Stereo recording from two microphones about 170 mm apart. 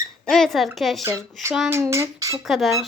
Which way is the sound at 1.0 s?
15° right (ahead or behind).